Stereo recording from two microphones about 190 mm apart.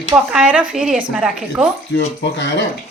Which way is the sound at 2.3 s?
65° left (ahead or behind).